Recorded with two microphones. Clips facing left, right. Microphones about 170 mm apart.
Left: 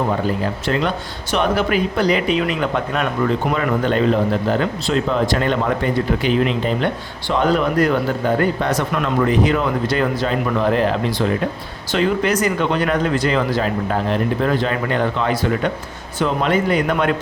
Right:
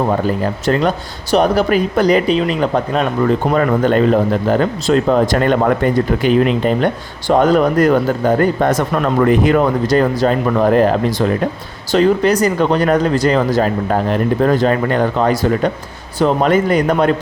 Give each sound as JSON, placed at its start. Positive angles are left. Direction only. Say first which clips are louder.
{"t": 0.6, "sound": "speech", "louder": "right 5 dB", "side_deg": -40}
{"t": 3.5, "sound": "speech", "louder": "right 5 dB", "side_deg": -45}
{"t": 9.2, "sound": "speech", "louder": "right 6 dB", "side_deg": -50}